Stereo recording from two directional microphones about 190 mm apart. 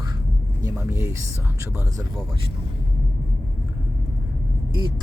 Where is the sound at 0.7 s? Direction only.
15° right (ahead or behind).